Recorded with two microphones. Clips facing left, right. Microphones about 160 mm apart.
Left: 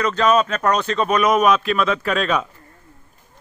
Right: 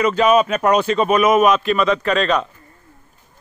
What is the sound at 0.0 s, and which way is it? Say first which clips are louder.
A man's voice: right 3 dB; 10° right (ahead or behind).